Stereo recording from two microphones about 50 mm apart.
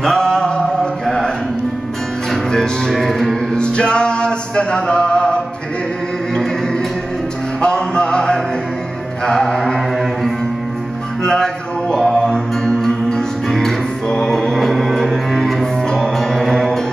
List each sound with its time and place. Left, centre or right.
0.0 s a sound: centre
2.5 s music: centre
2.9 s music: centre
3.5 s music: centre
7.6 s music: centre
9.2 s mantra: centre
11.2 s music: centre
15.6 s music: centre